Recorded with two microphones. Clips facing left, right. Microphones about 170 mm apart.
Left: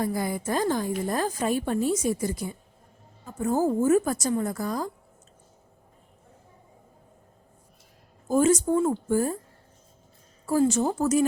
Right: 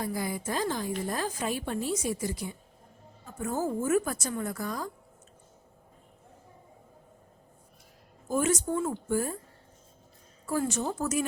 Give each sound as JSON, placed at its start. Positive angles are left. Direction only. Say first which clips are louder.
{"t": 0.0, "sound": "a woman's voice", "louder": "left 5 dB", "side_deg": 50}
{"t": 3.4, "sound": "a woman's voice", "louder": "left 7 dB", "side_deg": 35}
{"t": 8.3, "sound": "a woman's voice", "louder": "left 7 dB", "side_deg": 35}
{"t": 10.4, "sound": "a woman's voice", "louder": "left 7 dB", "side_deg": 30}